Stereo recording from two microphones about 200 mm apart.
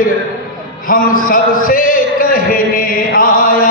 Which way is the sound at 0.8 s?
45° left (ahead or behind).